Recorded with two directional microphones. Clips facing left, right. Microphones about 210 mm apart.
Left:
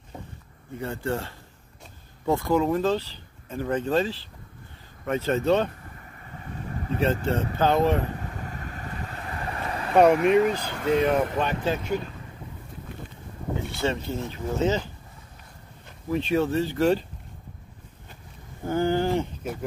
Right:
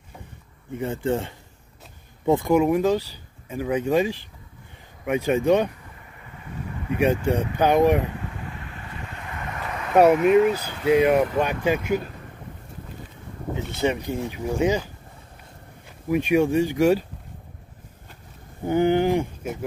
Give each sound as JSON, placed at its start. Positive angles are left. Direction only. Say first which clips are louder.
{"t": 0.7, "sound": "speech", "louder": "right 4 dB", "side_deg": -20}
{"t": 6.4, "sound": "vehicle", "louder": "right 1 dB", "side_deg": 40}
{"t": 7.5, "sound": "speech", "louder": "right 4 dB", "side_deg": -15}
{"t": 8.4, "sound": "boat", "louder": "left 1 dB", "side_deg": 40}
{"t": 10.2, "sound": "speech", "louder": "right 3 dB", "side_deg": -5}
{"t": 13.7, "sound": "speech", "louder": "right 5 dB", "side_deg": -15}
{"t": 16.1, "sound": "speech", "louder": "right 4 dB", "side_deg": -15}
{"t": 18.6, "sound": "speech", "louder": "right 4 dB", "side_deg": -20}